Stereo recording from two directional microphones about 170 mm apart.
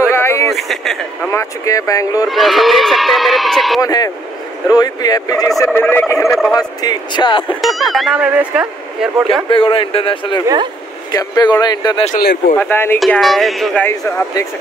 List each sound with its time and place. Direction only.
0.1 s a sound: 15° left (ahead or behind)
0.5 s a sound: centre (ahead or behind)
1.3 s speech: 20° left (ahead or behind)
2.2 s speech: centre (ahead or behind)
3.8 s speech: 20° left (ahead or behind)
7.4 s speech: centre (ahead or behind)
9.5 s a man's voice: 30° left (ahead or behind)
10.4 s speech: 25° right (ahead or behind)
11.1 s speech: 20° left (ahead or behind)
12.5 s speech: 10° left (ahead or behind)
13.0 s speech: centre (ahead or behind)
13.8 s speech: 15° left (ahead or behind)